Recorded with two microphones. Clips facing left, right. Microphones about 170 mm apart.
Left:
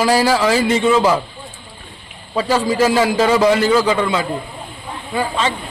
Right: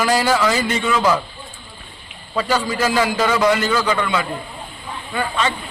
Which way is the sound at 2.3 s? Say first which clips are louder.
Left 4 dB; 30° left (ahead or behind).